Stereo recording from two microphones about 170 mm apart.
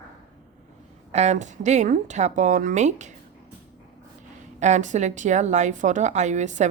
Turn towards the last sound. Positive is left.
turn(degrees=-45)  # may be behind; listen again after turning